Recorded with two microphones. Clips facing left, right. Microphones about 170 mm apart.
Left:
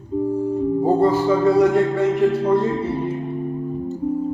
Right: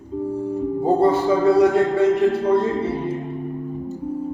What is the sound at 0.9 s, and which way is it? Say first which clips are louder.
Music: right 2 dB; 30° right (ahead or behind).